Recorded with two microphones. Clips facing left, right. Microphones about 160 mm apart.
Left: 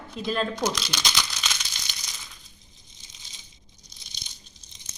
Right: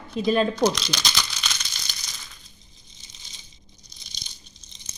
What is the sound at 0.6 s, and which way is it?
Speech, 5° left (ahead or behind).